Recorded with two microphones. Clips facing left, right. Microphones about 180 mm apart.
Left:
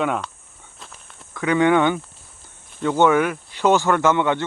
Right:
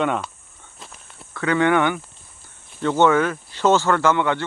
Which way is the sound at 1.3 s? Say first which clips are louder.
Left 1 dB; 15° left (ahead or behind).